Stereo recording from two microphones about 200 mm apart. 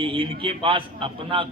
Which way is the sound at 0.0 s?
25° right (ahead or behind).